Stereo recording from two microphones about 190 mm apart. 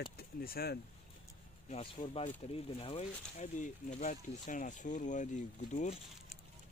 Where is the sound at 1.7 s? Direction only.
25° left (ahead or behind).